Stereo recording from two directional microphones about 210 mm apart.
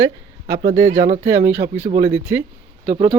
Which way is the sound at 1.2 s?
10° right (ahead or behind).